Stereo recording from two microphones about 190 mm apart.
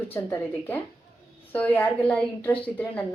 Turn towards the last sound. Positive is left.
turn(degrees=10)  # may be behind; listen again after turning